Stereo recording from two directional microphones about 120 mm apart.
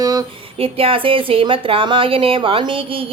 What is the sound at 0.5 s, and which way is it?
Speech, 50° right (ahead or behind).